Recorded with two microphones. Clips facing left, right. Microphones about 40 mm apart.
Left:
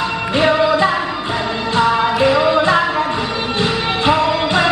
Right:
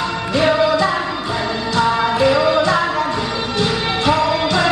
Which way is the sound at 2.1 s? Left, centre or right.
Centre.